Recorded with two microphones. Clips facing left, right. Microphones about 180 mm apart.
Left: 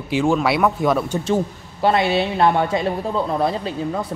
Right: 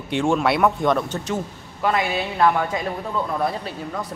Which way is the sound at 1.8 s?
30° left (ahead or behind).